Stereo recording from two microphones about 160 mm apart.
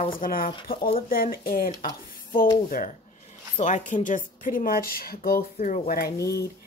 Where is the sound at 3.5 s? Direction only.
50° left (ahead or behind); by 5.4 s 70° left (ahead or behind).